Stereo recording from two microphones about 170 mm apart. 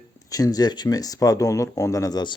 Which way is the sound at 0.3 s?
20° left (ahead or behind).